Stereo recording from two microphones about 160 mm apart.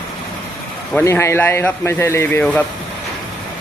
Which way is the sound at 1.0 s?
15° left (ahead or behind).